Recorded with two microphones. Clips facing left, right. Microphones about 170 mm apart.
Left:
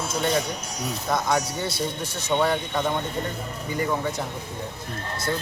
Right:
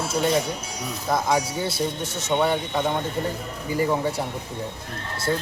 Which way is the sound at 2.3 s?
5° right (ahead or behind).